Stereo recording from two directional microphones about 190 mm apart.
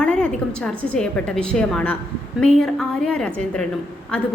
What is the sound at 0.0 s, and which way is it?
A woman's voice, 5° left (ahead or behind).